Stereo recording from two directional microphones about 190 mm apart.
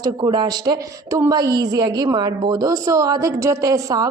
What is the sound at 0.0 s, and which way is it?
A woman's voice, 20° right (ahead or behind).